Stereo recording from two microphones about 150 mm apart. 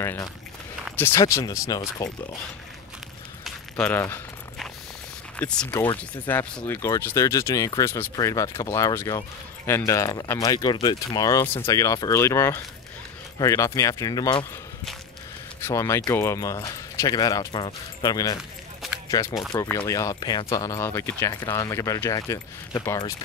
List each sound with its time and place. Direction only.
0.0 s speech: 20° left (ahead or behind)
1.2 s speech: 25° left (ahead or behind)
3.4 s a sound: 5° left (ahead or behind)
5.4 s speech: 5° left (ahead or behind); by 14.4 s 25° left (ahead or behind)
15.6 s speech: 20° left (ahead or behind)
18.8 s a sound: centre (ahead or behind)
19.5 s speech: 25° left (ahead or behind)